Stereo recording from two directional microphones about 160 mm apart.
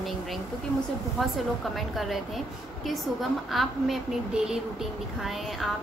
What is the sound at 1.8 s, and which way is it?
A woman's voice, centre (ahead or behind).